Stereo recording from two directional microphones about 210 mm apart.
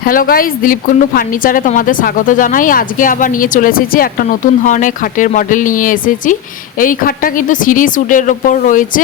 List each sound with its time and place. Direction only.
0.0 s a woman's voice: 45° left (ahead or behind)